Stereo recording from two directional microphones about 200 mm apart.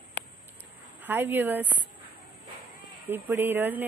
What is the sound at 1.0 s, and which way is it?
Speech, 10° right (ahead or behind).